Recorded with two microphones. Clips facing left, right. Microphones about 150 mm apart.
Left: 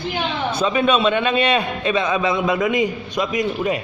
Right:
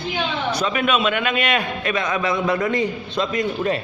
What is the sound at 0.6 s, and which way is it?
A man's voice, 30° left (ahead or behind).